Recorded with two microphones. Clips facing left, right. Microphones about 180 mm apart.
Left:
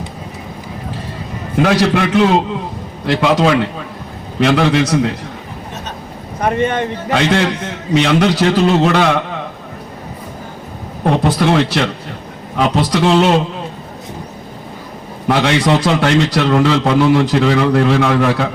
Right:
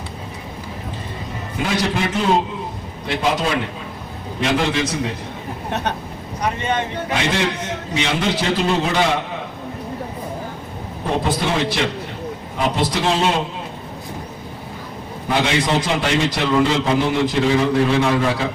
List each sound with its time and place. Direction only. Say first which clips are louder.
1.6 s a man's voice: left 7 dB; 70° left (ahead or behind)
6.4 s a man's voice: left 6 dB; 55° left (ahead or behind)
11.0 s a man's voice: left 7 dB; 70° left (ahead or behind)
15.3 s a man's voice: left 6 dB; 75° left (ahead or behind)